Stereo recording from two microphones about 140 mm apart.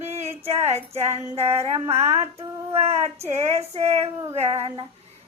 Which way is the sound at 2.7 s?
45° right (ahead or behind).